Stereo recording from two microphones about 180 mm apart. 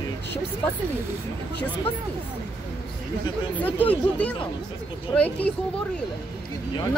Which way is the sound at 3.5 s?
10° left (ahead or behind).